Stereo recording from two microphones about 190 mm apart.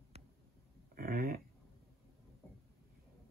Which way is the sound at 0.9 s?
50° right (ahead or behind).